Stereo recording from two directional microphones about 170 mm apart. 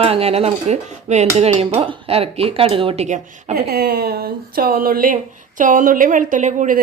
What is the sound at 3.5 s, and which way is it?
A woman's voice, 65° right (ahead or behind).